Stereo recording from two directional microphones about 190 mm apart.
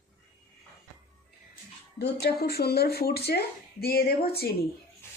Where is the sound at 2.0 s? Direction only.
60° left (ahead or behind).